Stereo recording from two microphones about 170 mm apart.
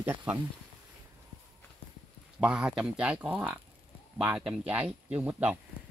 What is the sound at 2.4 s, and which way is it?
Speech, 5° right (ahead or behind).